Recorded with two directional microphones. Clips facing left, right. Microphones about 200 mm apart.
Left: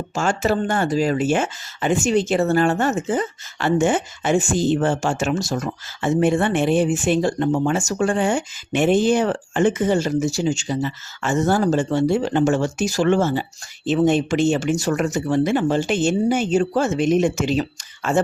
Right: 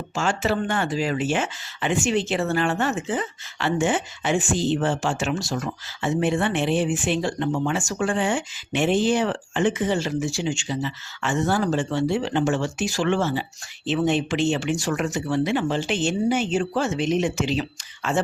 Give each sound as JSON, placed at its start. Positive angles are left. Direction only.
{"t": 0.1, "sound": "speech", "side_deg": 45}